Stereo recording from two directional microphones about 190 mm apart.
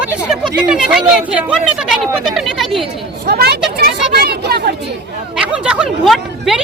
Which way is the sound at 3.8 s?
55° right (ahead or behind).